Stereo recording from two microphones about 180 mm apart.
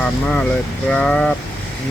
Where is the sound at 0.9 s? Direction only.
5° left (ahead or behind).